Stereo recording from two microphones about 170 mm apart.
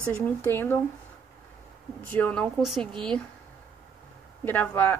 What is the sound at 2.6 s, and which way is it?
Speech, centre (ahead or behind).